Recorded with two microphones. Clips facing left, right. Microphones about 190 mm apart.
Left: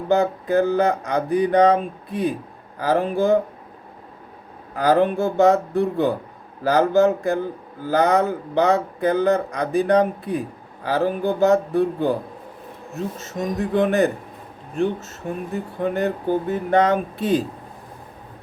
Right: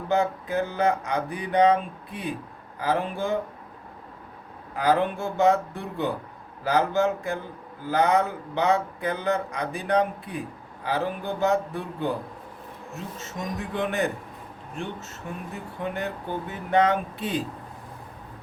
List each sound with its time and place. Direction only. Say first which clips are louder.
0.1 s speech: left 6 dB; 40° left (ahead or behind)
4.8 s speech: left 6 dB; 40° left (ahead or behind)
15.2 s speech: left 9 dB; 40° left (ahead or behind)